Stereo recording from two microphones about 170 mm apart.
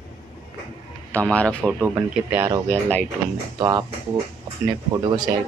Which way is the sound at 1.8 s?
10° right (ahead or behind).